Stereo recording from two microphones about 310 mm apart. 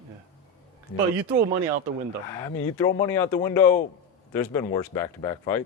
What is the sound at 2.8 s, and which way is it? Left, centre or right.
Speech, left.